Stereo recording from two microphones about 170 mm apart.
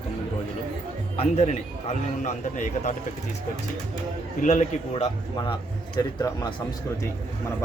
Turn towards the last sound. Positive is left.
turn(degrees=25)  # may be behind; listen again after turning